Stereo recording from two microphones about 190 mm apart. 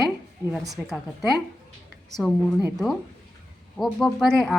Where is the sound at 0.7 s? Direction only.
Centre (ahead or behind).